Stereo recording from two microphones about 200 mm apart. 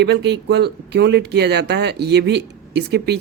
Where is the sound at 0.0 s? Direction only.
55° right (ahead or behind).